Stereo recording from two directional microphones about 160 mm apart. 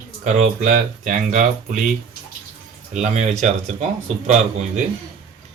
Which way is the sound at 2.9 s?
45° right (ahead or behind).